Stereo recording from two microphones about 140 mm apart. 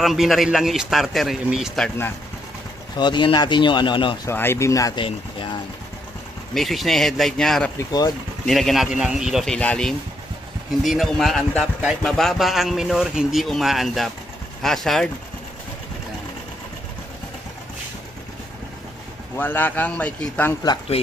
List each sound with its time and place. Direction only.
0.0 s a man's voice: centre (ahead or behind)
3.0 s speech: 35° left (ahead or behind)
4.3 s speech: 15° left (ahead or behind)
5.0 s a sound: 35° left (ahead or behind)
6.5 s a man's voice: centre (ahead or behind)
19.3 s a man's voice: 15° left (ahead or behind)